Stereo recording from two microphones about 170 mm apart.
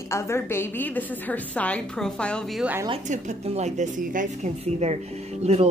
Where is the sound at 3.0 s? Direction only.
40° right (ahead or behind).